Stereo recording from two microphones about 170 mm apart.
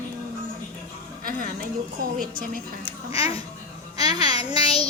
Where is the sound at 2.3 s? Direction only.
55° right (ahead or behind).